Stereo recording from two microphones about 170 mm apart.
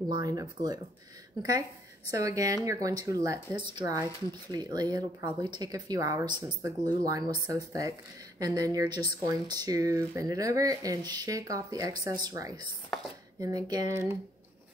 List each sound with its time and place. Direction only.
0.1 s speech: 20° right (ahead or behind)
2.0 s speech: 20° right (ahead or behind)